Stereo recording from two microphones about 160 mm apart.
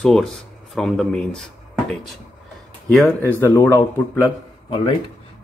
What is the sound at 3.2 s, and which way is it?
Speech, 15° left (ahead or behind).